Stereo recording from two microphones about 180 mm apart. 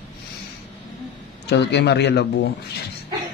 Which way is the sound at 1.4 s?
70° left (ahead or behind).